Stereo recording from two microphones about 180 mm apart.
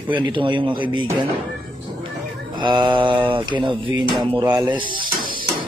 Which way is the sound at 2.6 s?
25° right (ahead or behind).